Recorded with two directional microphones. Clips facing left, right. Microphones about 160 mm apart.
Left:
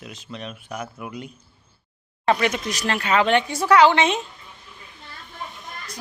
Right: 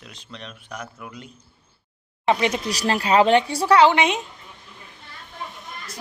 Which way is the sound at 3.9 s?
15° right (ahead or behind).